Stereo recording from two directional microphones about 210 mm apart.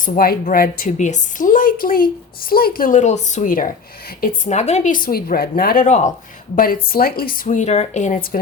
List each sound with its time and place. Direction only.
0.0 s a woman's voice: 45° left (ahead or behind)